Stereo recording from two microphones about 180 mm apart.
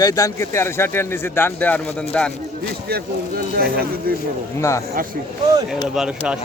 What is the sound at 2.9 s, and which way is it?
Speech, 60° right (ahead or behind).